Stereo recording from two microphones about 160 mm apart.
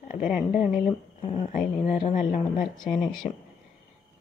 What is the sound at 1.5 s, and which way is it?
Speech, 55° left (ahead or behind).